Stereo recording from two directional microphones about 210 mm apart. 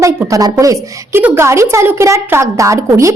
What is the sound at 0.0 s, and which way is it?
A woman's voice, 15° right (ahead or behind).